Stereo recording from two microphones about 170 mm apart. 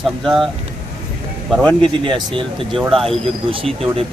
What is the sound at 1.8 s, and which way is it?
Speech, 30° right (ahead or behind).